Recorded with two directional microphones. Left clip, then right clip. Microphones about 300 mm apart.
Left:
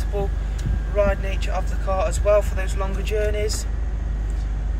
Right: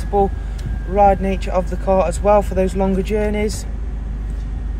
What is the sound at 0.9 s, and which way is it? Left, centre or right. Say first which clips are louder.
Speech: right 8 dB; right.